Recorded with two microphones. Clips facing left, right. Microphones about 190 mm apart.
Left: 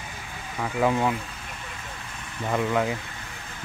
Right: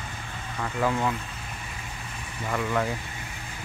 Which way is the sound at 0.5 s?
10° left (ahead or behind).